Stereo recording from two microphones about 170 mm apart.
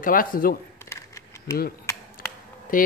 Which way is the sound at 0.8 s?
15° left (ahead or behind).